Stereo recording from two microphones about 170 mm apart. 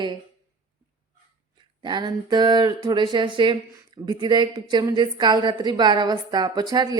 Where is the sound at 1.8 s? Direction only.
25° right (ahead or behind).